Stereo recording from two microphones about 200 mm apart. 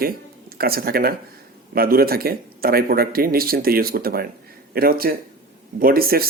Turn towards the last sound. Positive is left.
turn(degrees=-50)  # may be behind; listen again after turning